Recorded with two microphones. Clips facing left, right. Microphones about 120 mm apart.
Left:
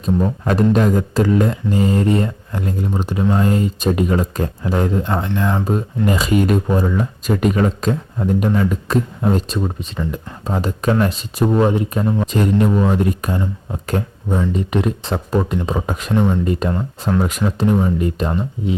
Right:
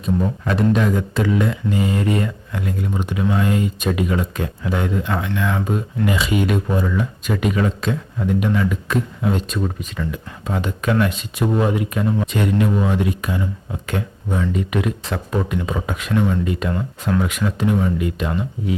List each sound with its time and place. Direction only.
0.0 s speech: 40° left (ahead or behind)
9.6 s speech: 20° left (ahead or behind)
10.1 s speech: 35° left (ahead or behind)